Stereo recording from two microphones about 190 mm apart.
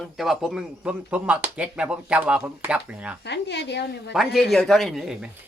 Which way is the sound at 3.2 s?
65° left (ahead or behind).